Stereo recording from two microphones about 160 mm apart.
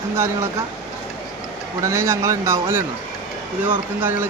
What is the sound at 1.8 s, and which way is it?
Speech, 20° right (ahead or behind).